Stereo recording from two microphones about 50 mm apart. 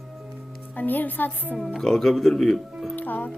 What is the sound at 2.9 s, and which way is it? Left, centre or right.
Music, left.